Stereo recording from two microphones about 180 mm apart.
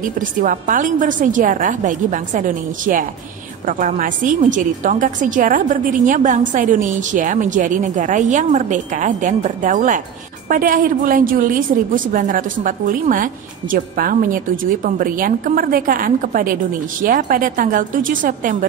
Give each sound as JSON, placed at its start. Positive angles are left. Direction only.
{"t": 0.0, "sound": "a woman's voice", "side_deg": -45}